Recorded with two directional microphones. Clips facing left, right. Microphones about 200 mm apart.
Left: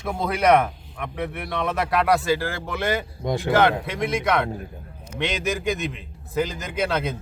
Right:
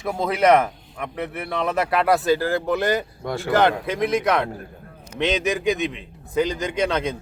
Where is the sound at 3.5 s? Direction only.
Centre (ahead or behind).